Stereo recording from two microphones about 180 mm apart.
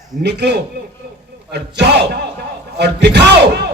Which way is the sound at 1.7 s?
70° right (ahead or behind).